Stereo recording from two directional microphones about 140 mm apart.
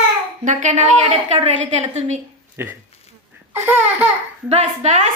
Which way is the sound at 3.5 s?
15° right (ahead or behind).